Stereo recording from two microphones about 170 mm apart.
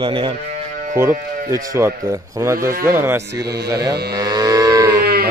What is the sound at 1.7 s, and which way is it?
Speech, 15° right (ahead or behind).